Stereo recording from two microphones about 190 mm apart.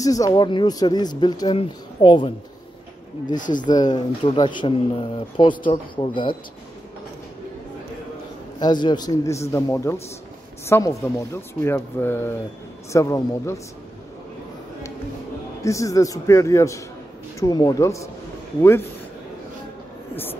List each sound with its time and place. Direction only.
0.0 s speech: 20° left (ahead or behind)
3.3 s speech: 45° left (ahead or behind)
3.6 s speech: 20° left (ahead or behind)
8.5 s speech: 20° left (ahead or behind)
15.6 s speech: 15° left (ahead or behind)